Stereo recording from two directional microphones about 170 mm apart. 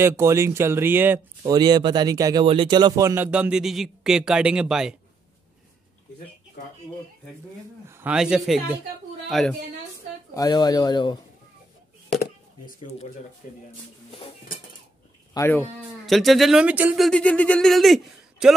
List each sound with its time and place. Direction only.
0.0 s speech: 15° right (ahead or behind)
1.4 s speech: 25° right (ahead or behind)
3.3 s speech: 5° right (ahead or behind)
8.0 s speech: 5° right (ahead or behind)
10.3 s speech: 20° left (ahead or behind)
12.1 s a sound: 65° left (ahead or behind)
13.4 s speech: 50° left (ahead or behind)
15.3 s speech: 15° left (ahead or behind)
16.1 s speech: centre (ahead or behind)